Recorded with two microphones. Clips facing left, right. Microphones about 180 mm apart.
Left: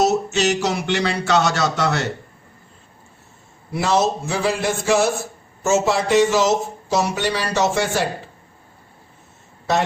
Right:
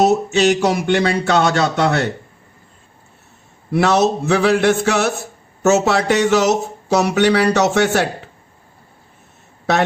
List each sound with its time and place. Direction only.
0.0 s a sound: 55° right (ahead or behind)
0.6 s speech: 55° right (ahead or behind)
3.7 s a man's voice: 65° right (ahead or behind)